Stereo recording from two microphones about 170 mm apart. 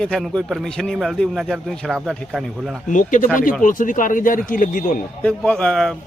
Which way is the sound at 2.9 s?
50° left (ahead or behind).